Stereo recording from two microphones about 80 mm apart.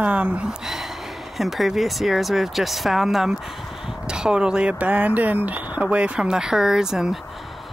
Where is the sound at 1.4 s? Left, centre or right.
Centre.